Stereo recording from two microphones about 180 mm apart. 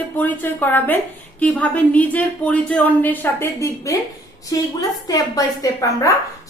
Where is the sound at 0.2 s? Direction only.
10° left (ahead or behind).